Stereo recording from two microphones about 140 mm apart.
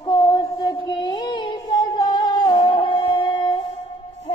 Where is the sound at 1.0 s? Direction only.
30° left (ahead or behind).